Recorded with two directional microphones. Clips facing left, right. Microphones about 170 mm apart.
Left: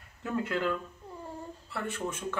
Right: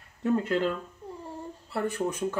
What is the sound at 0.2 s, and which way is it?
Speech, 35° right (ahead or behind).